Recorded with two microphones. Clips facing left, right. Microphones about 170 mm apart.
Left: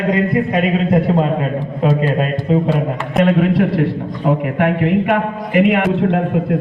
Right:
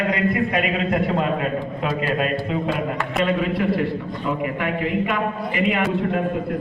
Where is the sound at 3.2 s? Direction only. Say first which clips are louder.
Left 8 dB; 70° left (ahead or behind).